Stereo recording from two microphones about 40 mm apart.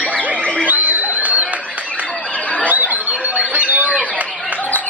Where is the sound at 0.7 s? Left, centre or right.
Right.